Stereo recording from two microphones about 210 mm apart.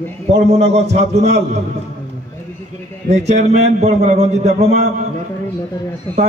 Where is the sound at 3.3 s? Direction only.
30° right (ahead or behind).